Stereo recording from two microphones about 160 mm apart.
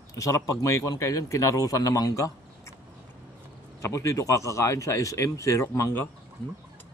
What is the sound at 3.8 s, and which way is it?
Speech, 20° left (ahead or behind).